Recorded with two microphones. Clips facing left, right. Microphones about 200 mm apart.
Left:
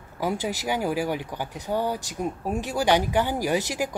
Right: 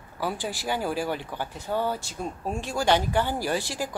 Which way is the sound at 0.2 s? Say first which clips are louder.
Left 3 dB; 15° left (ahead or behind).